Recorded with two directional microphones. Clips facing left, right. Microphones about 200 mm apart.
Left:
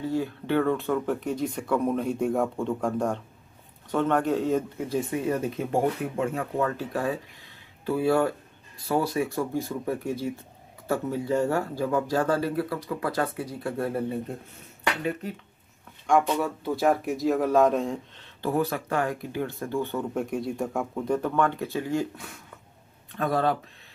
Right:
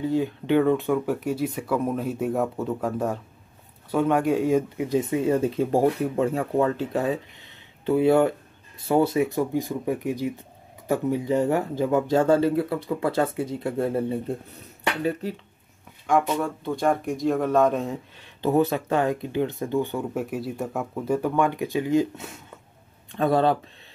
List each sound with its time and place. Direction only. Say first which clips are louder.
0.0 s speech: right 4 dB; 15° right (ahead or behind)
16.1 s speech: even; centre (ahead or behind)
18.4 s speech: right 5 dB; 20° right (ahead or behind)